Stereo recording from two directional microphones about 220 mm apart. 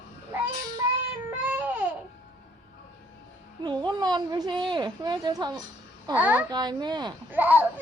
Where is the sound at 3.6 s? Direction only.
20° right (ahead or behind).